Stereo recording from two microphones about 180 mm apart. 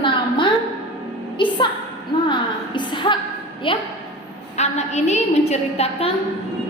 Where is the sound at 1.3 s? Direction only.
25° left (ahead or behind).